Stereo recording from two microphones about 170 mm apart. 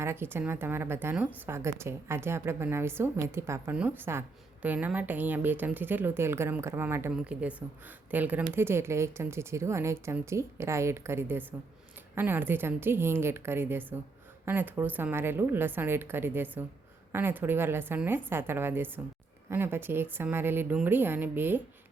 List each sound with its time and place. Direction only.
0.0 s a woman's voice: 15° right (ahead or behind)